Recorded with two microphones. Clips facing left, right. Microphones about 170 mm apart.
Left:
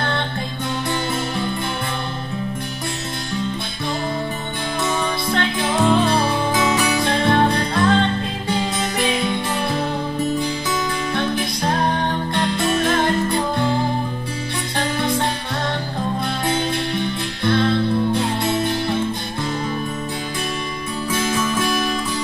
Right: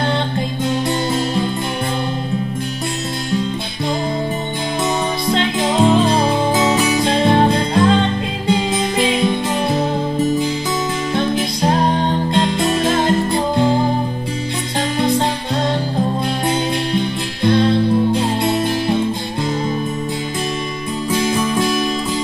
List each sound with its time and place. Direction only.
0.8 s music: 20° right (ahead or behind)
5.3 s music: 20° right (ahead or behind)
11.1 s music: 20° right (ahead or behind)
16.4 s music: 20° right (ahead or behind)